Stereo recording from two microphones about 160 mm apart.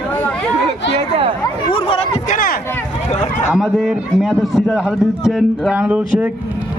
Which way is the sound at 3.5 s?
Centre (ahead or behind).